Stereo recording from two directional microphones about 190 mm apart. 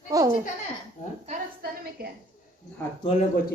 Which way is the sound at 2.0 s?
55° right (ahead or behind).